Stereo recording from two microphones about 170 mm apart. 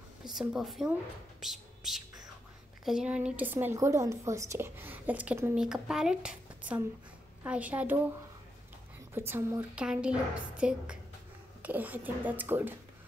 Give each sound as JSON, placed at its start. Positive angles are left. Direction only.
{"t": 0.2, "sound": "a woman's voice", "side_deg": -5}
{"t": 1.4, "sound": "whispering", "side_deg": 0}
{"t": 2.8, "sound": "a woman's voice", "side_deg": -5}
{"t": 9.1, "sound": "a woman's voice", "side_deg": -15}